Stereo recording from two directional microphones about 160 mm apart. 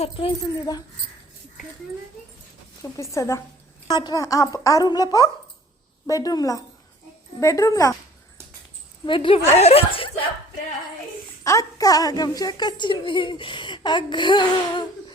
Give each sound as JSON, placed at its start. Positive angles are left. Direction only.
{"t": 0.0, "sound": "speech", "side_deg": 35}
{"t": 3.0, "sound": "a woman's voice", "side_deg": 20}
{"t": 9.0, "sound": "speech", "side_deg": 30}
{"t": 11.4, "sound": "a woman's voice", "side_deg": 20}